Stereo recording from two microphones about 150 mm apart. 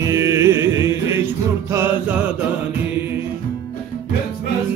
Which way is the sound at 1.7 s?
10° right (ahead or behind).